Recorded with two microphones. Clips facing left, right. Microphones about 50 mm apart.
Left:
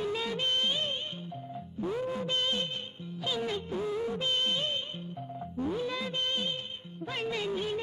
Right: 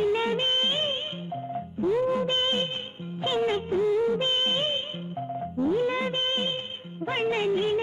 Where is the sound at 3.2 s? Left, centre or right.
Right.